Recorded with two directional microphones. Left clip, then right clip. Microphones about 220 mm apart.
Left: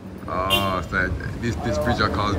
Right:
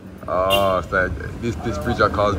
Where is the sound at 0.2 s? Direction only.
5° left (ahead or behind).